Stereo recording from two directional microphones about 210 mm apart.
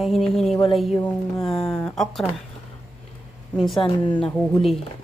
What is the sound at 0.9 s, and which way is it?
Speech, 15° left (ahead or behind).